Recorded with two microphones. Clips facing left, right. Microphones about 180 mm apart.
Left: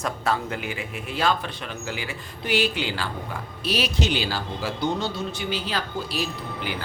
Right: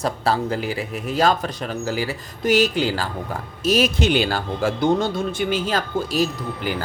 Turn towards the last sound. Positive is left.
turn(degrees=-45)  # may be behind; listen again after turning